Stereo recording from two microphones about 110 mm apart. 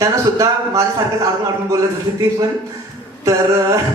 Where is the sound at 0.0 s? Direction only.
30° right (ahead or behind).